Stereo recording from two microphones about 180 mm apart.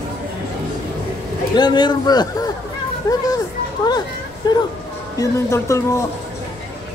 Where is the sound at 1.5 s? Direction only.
25° left (ahead or behind).